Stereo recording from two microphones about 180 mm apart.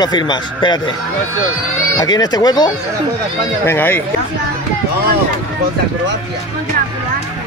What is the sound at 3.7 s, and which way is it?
Speech, 10° left (ahead or behind).